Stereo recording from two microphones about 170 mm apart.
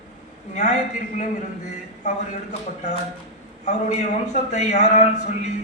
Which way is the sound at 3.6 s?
40° left (ahead or behind).